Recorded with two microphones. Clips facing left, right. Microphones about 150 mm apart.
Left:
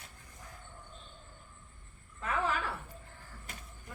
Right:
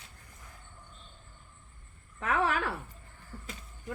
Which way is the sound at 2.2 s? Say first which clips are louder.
Right 4 dB; 70° right (ahead or behind).